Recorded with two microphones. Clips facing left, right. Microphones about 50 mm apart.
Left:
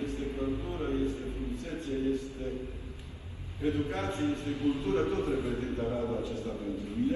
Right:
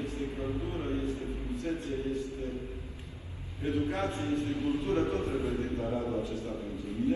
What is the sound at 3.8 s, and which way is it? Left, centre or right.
A man's voice, right.